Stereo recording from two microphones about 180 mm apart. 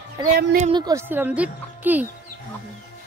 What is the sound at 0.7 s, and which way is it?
Speech, 20° right (ahead or behind).